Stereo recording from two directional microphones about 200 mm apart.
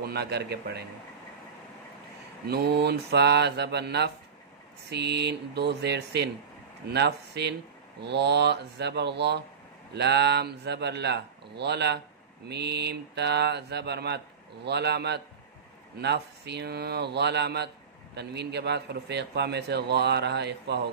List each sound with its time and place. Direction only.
0.0 s a man's voice: 55° right (ahead or behind)
2.4 s a man's voice: 55° right (ahead or behind)